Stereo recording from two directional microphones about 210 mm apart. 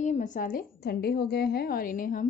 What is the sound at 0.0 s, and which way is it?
A woman's voice, 35° left (ahead or behind).